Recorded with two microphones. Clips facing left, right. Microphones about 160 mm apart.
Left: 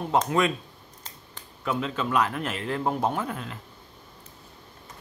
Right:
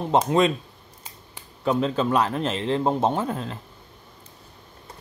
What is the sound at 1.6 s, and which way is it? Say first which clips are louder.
Speech: right 6 dB; 35° right (ahead or behind).